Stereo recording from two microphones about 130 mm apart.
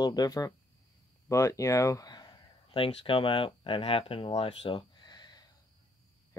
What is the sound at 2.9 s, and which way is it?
Speech, 45° left (ahead or behind).